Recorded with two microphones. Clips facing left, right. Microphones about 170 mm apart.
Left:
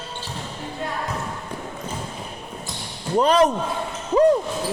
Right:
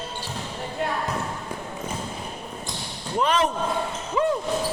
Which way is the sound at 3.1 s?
35° left (ahead or behind).